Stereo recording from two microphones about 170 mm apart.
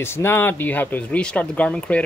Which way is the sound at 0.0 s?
15° left (ahead or behind).